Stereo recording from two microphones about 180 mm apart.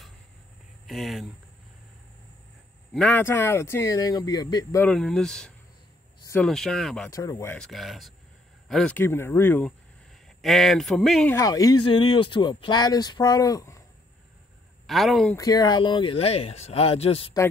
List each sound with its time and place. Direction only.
0.8 s speech: centre (ahead or behind)
2.9 s speech: 5° left (ahead or behind); by 4.8 s 20° left (ahead or behind)
4.8 s speech: 5° left (ahead or behind)
7.1 s speech: 15° left (ahead or behind)
7.5 s speech: centre (ahead or behind)
11.3 s speech: 20° left (ahead or behind)
14.9 s speech: centre (ahead or behind)
15.3 s speech: 20° left (ahead or behind)